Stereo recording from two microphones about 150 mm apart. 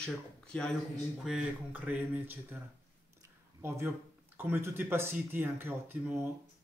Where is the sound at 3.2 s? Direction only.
15° right (ahead or behind).